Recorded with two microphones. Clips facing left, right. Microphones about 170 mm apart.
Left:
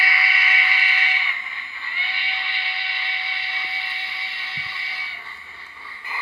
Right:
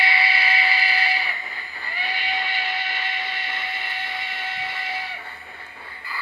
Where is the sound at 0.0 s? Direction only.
30° right (ahead or behind); by 5.0 s 45° right (ahead or behind).